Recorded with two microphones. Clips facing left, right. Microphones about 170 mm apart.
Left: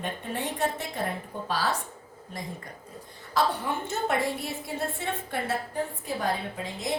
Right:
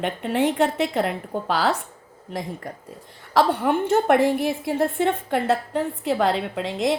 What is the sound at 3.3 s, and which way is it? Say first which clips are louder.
Speech: right 8 dB; 65° right (ahead or behind).